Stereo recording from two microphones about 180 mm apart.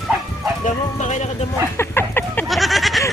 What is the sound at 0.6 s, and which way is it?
Bow-wow, 40° left (ahead or behind).